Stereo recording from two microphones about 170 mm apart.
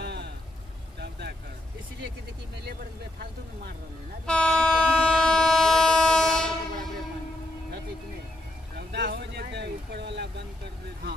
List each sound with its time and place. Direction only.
0.0 s vehicle: 90° right
4.3 s train: 5° left (ahead or behind)
8.7 s boat: 85° right